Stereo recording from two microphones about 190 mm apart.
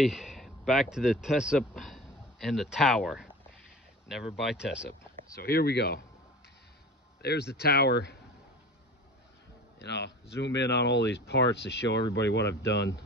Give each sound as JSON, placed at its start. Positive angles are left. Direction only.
{"t": 0.0, "sound": "speech", "side_deg": 0}
{"t": 5.4, "sound": "speech", "side_deg": 55}
{"t": 7.2, "sound": "speech", "side_deg": 60}
{"t": 9.8, "sound": "speech", "side_deg": 65}